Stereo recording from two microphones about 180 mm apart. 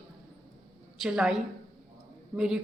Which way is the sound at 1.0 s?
5° right (ahead or behind).